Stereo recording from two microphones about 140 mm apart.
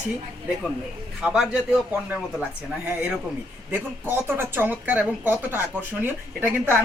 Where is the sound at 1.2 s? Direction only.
5° right (ahead or behind).